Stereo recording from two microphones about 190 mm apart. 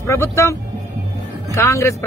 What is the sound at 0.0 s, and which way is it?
A man's voice, 15° left (ahead or behind).